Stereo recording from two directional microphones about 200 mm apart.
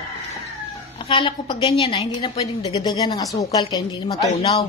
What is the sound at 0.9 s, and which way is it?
A woman's voice, 25° left (ahead or behind).